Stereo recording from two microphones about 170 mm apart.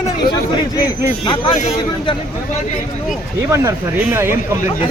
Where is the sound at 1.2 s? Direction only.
30° left (ahead or behind).